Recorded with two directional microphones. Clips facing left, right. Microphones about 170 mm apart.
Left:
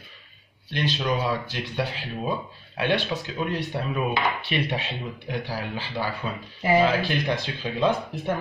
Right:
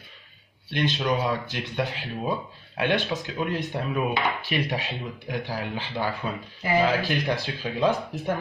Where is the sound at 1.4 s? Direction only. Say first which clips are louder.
Even; 15° right (ahead or behind).